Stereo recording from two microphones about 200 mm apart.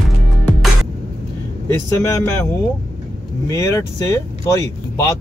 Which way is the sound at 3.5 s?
15° left (ahead or behind).